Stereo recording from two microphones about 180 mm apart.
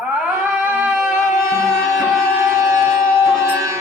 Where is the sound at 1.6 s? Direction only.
15° right (ahead or behind).